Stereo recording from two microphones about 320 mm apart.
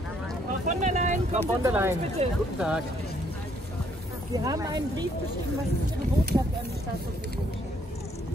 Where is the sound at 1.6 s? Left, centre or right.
Centre.